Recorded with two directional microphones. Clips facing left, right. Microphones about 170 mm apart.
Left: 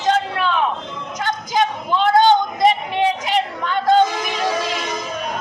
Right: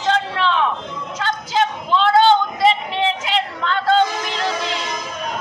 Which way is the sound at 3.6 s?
15° left (ahead or behind).